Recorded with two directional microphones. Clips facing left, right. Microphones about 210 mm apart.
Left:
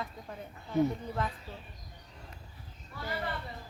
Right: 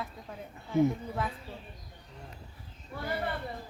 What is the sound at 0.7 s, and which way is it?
Speech, 10° right (ahead or behind).